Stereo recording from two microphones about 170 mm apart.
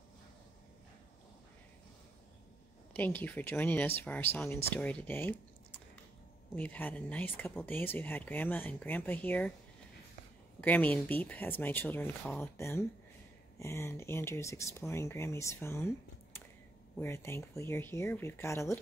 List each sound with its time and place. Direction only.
2.9 s speech: 10° left (ahead or behind)
10.6 s speech: 10° left (ahead or behind)
17.0 s speech: 15° left (ahead or behind)